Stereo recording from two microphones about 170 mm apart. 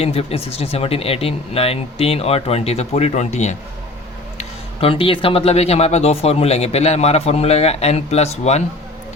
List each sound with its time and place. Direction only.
0.0 s speech: 35° left (ahead or behind)